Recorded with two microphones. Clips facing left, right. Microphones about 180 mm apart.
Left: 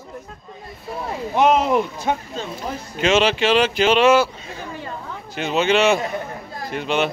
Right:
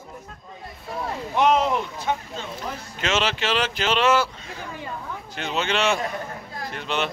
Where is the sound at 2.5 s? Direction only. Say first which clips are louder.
Left 5 dB; 15° left (ahead or behind).